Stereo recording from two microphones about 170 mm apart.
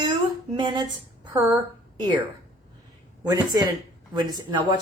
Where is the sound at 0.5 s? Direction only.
25° right (ahead or behind).